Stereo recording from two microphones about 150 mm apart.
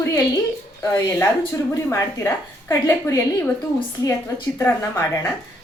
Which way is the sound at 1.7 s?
20° left (ahead or behind).